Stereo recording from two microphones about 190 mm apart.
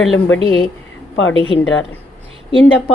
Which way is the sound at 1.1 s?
90° left.